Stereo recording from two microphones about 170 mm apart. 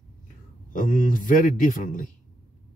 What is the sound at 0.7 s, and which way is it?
Speech, 50° left (ahead or behind).